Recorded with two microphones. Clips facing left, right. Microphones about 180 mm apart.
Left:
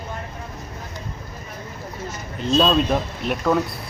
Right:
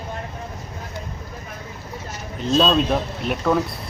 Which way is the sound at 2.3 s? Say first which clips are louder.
Even; centre (ahead or behind).